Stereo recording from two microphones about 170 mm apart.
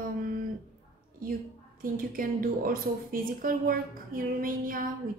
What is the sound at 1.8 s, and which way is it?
A woman's voice, 55° right (ahead or behind).